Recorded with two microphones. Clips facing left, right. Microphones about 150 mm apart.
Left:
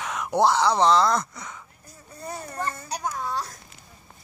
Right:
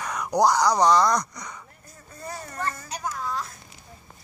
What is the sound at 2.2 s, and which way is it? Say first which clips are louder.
Children playing: left 1 dB; 25° left (ahead or behind).